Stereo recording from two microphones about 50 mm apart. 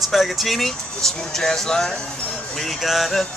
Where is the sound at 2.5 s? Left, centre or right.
Centre.